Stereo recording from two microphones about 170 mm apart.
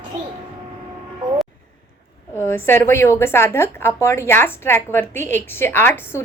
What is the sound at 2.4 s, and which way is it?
A woman's voice, 15° left (ahead or behind).